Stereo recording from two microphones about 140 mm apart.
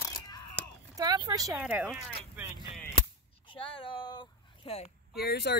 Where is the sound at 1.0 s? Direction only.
25° right (ahead or behind).